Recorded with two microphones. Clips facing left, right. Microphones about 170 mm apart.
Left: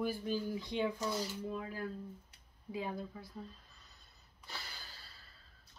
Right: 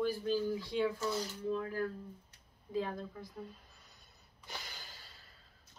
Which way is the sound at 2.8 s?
10° left (ahead or behind).